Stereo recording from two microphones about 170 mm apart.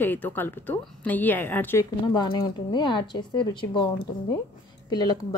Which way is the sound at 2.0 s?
25° left (ahead or behind).